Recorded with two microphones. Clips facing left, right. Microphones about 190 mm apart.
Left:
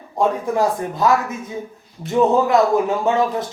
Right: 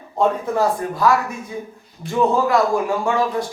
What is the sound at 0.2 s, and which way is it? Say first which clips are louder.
Speech: even; 15° left (ahead or behind).